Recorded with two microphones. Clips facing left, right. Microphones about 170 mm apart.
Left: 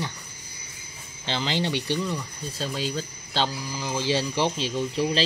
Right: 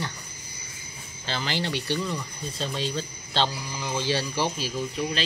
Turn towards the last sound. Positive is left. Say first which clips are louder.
# left 4 dB
turn(degrees=30)  # may be behind; listen again after turning